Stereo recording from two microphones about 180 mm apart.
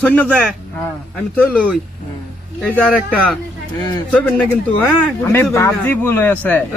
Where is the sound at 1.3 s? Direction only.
Centre (ahead or behind).